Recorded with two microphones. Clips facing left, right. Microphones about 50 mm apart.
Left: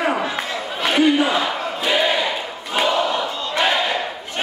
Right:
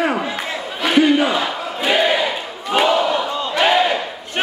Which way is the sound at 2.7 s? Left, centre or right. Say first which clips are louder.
Right 3 dB; centre.